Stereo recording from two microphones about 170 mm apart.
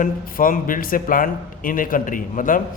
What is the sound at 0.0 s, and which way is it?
A man's voice, 55° left (ahead or behind).